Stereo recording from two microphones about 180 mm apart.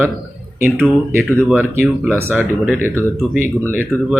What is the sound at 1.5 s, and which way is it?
Speech, 5° right (ahead or behind).